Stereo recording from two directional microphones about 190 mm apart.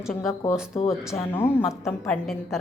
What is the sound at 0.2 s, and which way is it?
A woman's voice, 15° left (ahead or behind).